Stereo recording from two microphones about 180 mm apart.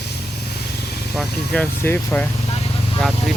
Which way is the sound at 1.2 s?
5° left (ahead or behind).